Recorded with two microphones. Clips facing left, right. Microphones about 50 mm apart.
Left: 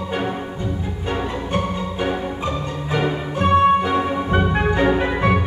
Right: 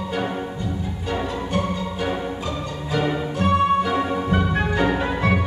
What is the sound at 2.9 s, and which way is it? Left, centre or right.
Music, left.